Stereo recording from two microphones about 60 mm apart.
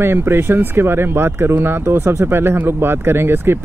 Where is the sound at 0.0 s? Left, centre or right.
Right.